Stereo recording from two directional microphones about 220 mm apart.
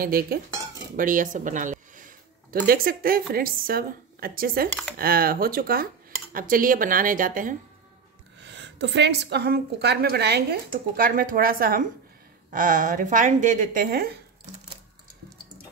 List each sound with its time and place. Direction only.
0.0 s a woman's voice: 40° right (ahead or behind)
8.4 s a woman's voice: 55° right (ahead or behind)